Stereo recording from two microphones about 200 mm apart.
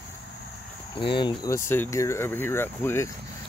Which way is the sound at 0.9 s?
25° left (ahead or behind).